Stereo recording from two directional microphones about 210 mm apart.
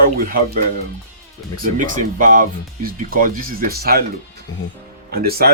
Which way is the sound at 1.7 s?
40° right (ahead or behind).